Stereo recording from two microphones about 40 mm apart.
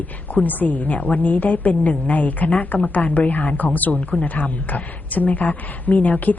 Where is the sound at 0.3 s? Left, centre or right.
Left.